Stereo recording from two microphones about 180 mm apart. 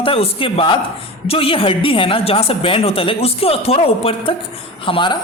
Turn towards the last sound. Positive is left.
turn(degrees=30)  # may be behind; listen again after turning